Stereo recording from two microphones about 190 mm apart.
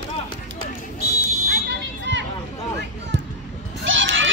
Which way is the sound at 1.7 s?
70° right (ahead or behind).